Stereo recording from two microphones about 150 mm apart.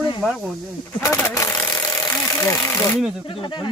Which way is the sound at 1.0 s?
20° left (ahead or behind).